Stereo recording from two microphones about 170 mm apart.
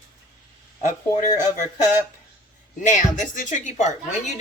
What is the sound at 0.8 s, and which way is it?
Speech, 45° left (ahead or behind).